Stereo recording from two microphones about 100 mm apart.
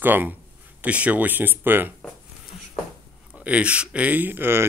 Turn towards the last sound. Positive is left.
turn(degrees=-20)  # may be behind; listen again after turning